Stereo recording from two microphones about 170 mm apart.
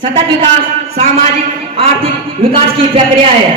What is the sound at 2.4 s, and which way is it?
Speech, 30° right (ahead or behind).